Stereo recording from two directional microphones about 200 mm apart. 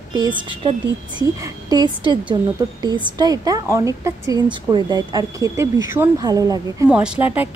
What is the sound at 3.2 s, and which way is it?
Speech, 20° right (ahead or behind).